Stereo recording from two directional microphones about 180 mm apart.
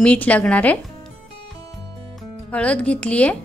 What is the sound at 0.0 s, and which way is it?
Speech, 5° left (ahead or behind).